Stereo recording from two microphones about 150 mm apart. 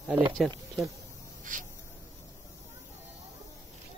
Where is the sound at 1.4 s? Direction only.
60° right (ahead or behind).